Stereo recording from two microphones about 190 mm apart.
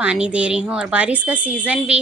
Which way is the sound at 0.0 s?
5° right (ahead or behind).